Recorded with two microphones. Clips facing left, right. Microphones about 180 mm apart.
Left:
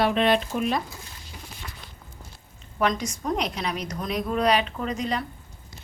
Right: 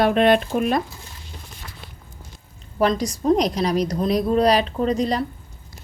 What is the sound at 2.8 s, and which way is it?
A woman's voice, 35° right (ahead or behind).